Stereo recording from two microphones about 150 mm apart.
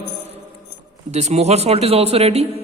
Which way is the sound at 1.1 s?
45° right (ahead or behind).